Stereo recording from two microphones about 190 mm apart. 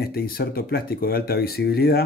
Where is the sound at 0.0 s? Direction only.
55° left (ahead or behind).